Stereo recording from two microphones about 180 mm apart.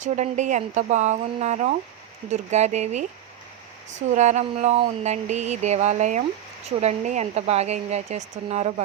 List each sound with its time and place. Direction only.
0.0 s a woman's voice: 40° right (ahead or behind)
4.1 s a woman's voice: 40° right (ahead or behind)